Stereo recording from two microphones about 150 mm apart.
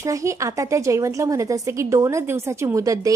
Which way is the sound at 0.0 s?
20° right (ahead or behind).